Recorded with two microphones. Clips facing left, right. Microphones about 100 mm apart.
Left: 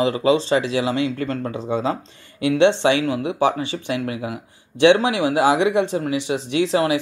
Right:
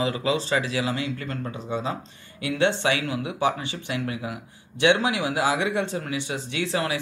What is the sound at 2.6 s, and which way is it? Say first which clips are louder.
Speech: left 6 dB; 25° left (ahead or behind).